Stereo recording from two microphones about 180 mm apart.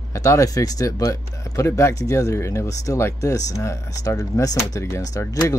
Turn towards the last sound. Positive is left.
turn(degrees=15)  # may be behind; listen again after turning